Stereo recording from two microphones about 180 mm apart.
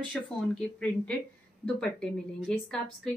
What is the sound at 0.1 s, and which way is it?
A woman's voice, 5° left (ahead or behind).